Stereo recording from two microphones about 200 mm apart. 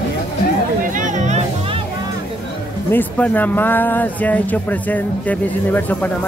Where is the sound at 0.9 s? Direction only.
40° right (ahead or behind).